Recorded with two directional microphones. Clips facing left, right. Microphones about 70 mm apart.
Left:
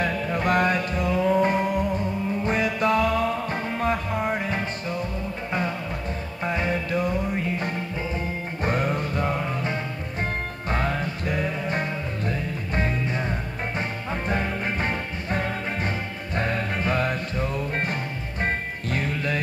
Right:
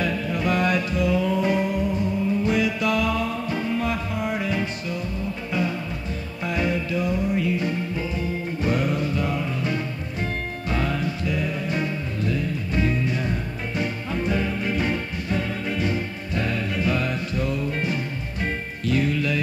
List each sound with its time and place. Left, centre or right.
0.0 s music: left
6.4 s music: left
6.9 s music: left